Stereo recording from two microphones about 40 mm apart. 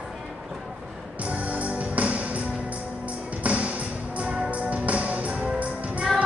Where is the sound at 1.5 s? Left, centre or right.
Right.